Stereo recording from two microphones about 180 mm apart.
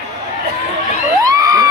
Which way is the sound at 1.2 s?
20° right (ahead or behind).